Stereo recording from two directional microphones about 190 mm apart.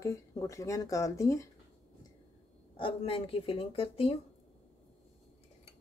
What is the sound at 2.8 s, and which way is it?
Speech, 30° left (ahead or behind).